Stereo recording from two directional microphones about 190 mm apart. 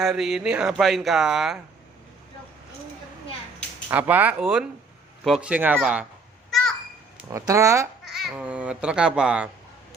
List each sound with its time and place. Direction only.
0.0 s speech: centre (ahead or behind)
3.8 s speech: 10° right (ahead or behind)
7.3 s speech: 15° right (ahead or behind)
8.0 s speech: centre (ahead or behind)